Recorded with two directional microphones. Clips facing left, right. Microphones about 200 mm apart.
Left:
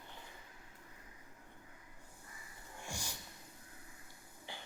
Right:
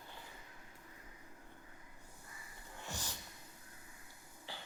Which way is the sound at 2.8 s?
10° left (ahead or behind).